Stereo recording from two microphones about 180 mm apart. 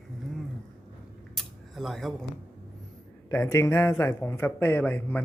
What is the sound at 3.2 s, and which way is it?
Speech, 15° left (ahead or behind).